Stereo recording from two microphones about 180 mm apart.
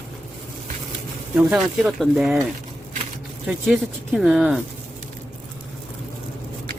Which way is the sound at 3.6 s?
Centre (ahead or behind).